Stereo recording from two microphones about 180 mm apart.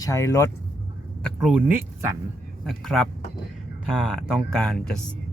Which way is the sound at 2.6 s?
Centre (ahead or behind).